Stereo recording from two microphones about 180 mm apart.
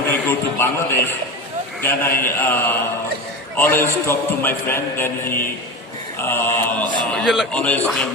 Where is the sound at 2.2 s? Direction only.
10° left (ahead or behind).